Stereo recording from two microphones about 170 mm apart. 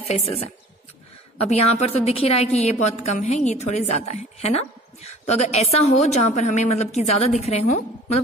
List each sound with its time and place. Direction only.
0.1 s a woman's voice: 35° left (ahead or behind)
1.5 s a woman's voice: 40° left (ahead or behind)